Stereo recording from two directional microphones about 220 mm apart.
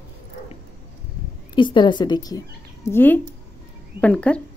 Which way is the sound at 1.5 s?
20° left (ahead or behind).